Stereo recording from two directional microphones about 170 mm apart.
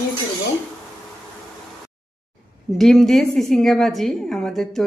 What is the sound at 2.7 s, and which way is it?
Speech, centre (ahead or behind).